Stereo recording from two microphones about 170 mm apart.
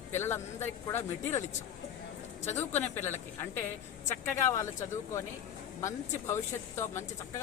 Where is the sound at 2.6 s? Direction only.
10° left (ahead or behind).